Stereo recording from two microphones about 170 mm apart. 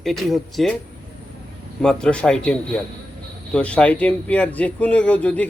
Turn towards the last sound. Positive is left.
turn(degrees=10)  # may be behind; listen again after turning